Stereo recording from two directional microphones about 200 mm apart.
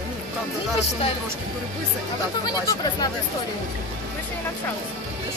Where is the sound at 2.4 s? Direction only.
20° left (ahead or behind).